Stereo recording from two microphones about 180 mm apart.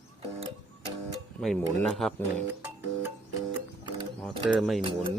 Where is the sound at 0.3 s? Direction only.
30° right (ahead or behind).